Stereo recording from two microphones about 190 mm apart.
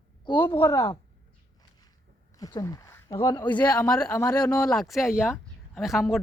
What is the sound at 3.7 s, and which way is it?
Speech, 5° left (ahead or behind).